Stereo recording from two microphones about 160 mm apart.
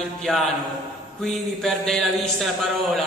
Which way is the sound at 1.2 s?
Centre (ahead or behind).